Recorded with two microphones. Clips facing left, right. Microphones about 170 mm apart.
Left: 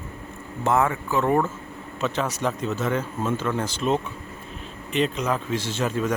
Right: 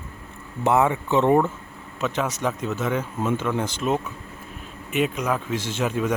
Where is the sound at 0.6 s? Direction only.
15° right (ahead or behind).